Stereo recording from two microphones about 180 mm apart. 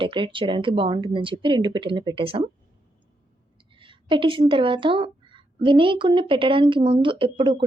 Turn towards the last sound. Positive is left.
turn(degrees=-30)  # may be behind; listen again after turning